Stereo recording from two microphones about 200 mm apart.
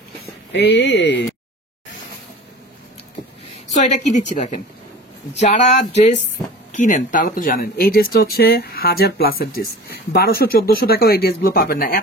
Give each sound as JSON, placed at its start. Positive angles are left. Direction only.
{"t": 0.5, "sound": "speech", "side_deg": 60}
{"t": 3.7, "sound": "speech", "side_deg": 35}